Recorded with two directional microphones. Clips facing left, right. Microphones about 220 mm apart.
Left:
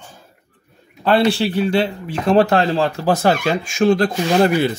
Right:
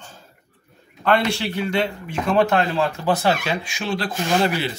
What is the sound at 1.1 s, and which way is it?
Speech, 35° left (ahead or behind).